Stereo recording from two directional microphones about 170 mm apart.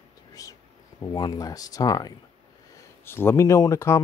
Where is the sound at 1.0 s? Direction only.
25° left (ahead or behind).